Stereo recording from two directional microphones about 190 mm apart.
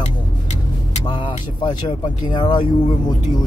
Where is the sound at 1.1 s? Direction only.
25° left (ahead or behind).